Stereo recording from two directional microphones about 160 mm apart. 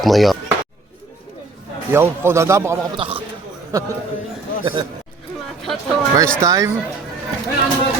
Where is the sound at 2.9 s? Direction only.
35° right (ahead or behind).